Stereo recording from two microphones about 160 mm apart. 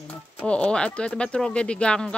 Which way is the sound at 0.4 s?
5° left (ahead or behind).